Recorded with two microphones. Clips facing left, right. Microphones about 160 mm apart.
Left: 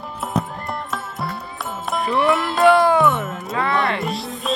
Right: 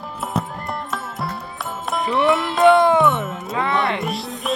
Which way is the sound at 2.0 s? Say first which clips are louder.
Even; 20° right (ahead or behind).